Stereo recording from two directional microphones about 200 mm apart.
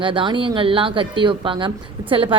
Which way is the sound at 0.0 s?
25° right (ahead or behind).